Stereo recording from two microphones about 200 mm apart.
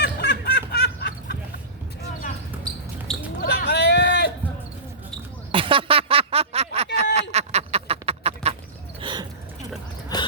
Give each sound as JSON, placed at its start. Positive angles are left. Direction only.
{"t": 0.0, "sound": "snicker", "side_deg": 55}
{"t": 3.1, "sound": "basketball bounce", "side_deg": 5}
{"t": 3.4, "sound": "a sound", "side_deg": 55}
{"t": 5.5, "sound": "a sound", "side_deg": -25}
{"t": 9.0, "sound": "gasp", "side_deg": -25}
{"t": 10.1, "sound": "mechanisms", "side_deg": 20}